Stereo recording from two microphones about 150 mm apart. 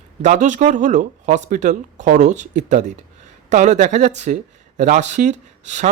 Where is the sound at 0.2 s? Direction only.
55° right (ahead or behind).